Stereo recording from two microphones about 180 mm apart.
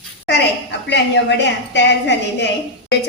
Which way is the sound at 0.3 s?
70° left (ahead or behind).